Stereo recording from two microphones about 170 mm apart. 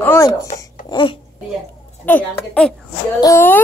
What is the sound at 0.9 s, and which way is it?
Speech, 30° left (ahead or behind).